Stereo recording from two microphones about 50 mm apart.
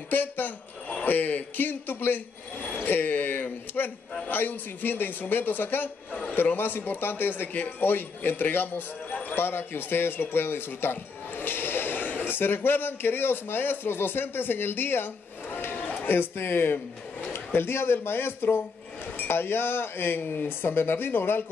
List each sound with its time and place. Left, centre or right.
0.1 s a man's voice: left
15.5 s a sound: left
17.3 s a man's voice: left